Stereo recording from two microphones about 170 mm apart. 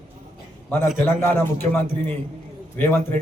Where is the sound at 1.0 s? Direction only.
15° left (ahead or behind).